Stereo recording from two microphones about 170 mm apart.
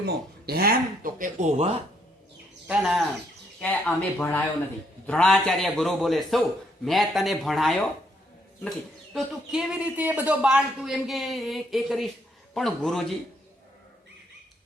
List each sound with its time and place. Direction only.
0.0 s speech: 70° right (ahead or behind); by 1.7 s 40° right (ahead or behind)
2.6 s a man's voice: 5° right (ahead or behind)
3.6 s a man's voice: 10° left (ahead or behind)
9.1 s a man's voice: centre (ahead or behind)